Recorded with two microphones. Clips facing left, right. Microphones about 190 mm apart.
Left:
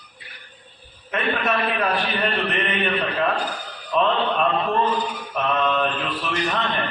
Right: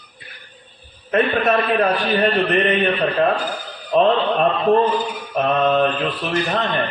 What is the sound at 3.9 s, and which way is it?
A man's voice, 40° right (ahead or behind).